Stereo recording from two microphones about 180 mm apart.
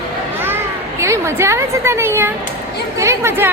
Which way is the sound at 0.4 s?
15° right (ahead or behind).